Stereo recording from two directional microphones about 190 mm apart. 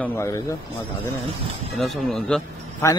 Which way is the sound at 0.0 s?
15° left (ahead or behind).